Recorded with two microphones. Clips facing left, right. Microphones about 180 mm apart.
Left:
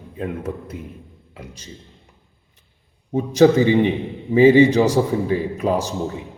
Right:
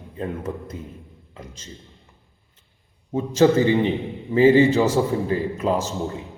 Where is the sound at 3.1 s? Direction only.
15° left (ahead or behind).